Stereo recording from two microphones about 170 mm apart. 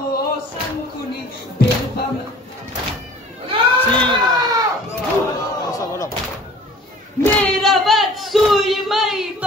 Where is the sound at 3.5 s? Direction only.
30° right (ahead or behind).